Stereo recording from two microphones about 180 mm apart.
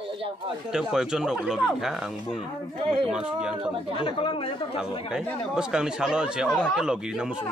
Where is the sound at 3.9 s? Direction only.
30° left (ahead or behind).